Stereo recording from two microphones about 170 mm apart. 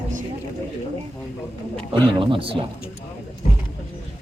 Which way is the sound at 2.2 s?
30° right (ahead or behind).